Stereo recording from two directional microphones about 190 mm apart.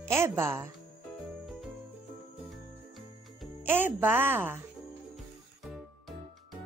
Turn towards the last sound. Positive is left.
turn(degrees=0)  # may be behind; listen again after turning